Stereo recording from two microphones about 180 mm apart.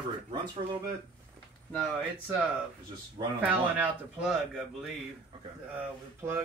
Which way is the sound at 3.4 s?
10° right (ahead or behind).